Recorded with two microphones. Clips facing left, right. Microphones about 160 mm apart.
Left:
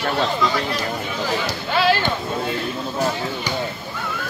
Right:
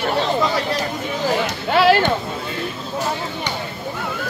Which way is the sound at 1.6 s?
60° right (ahead or behind).